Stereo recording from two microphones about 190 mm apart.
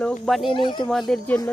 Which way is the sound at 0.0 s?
Centre (ahead or behind).